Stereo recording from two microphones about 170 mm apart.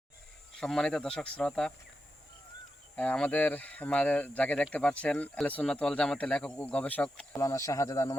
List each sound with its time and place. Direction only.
0.5 s speech: 5° left (ahead or behind)
2.9 s speech: 10° left (ahead or behind)